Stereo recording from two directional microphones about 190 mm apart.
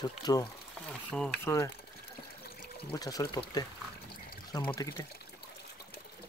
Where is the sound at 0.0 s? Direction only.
20° left (ahead or behind).